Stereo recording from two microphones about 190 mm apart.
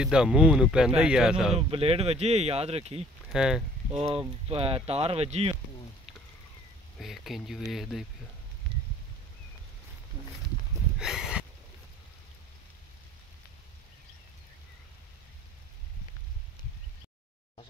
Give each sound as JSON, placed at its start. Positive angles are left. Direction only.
{"t": 0.0, "sound": "speech", "side_deg": -5}
{"t": 1.6, "sound": "speech", "side_deg": -30}
{"t": 3.3, "sound": "speech", "side_deg": -5}
{"t": 3.9, "sound": "speech", "side_deg": -30}
{"t": 7.0, "sound": "speech", "side_deg": 0}
{"t": 11.0, "sound": "a sound", "side_deg": -5}